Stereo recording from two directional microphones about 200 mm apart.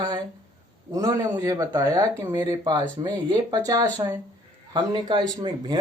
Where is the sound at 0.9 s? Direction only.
15° right (ahead or behind).